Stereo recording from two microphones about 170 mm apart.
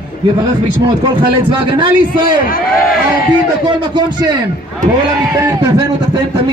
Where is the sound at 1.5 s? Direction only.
30° right (ahead or behind).